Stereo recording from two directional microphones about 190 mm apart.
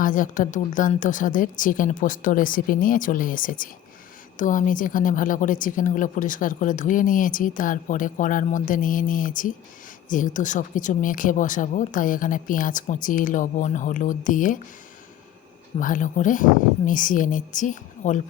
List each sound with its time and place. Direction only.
0.0 s a woman's voice: 45° left (ahead or behind)
15.8 s a woman's voice: 45° left (ahead or behind)